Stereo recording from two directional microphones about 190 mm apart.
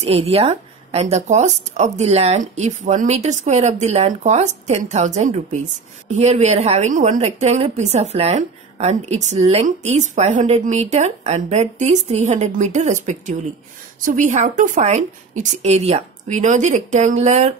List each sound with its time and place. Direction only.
0.0 s a woman's voice: 30° right (ahead or behind)